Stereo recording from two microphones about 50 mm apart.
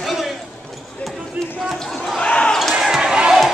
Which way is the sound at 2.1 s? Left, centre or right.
Left.